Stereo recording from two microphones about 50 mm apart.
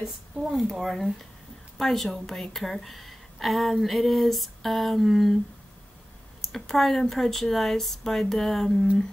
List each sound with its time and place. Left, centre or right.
0.4 s a woman's voice: centre
6.4 s a woman's voice: centre